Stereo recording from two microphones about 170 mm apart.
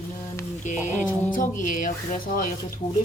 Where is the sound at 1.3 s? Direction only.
50° left (ahead or behind).